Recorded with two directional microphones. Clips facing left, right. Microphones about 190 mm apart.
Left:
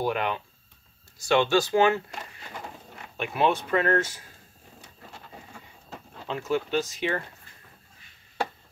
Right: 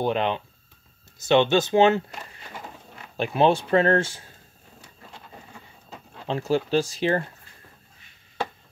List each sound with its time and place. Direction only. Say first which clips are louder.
0.0 s speech: right 3 dB; 25° right (ahead or behind)
3.2 s speech: right 5 dB; 30° right (ahead or behind)
6.2 s speech: right 4 dB; 30° right (ahead or behind)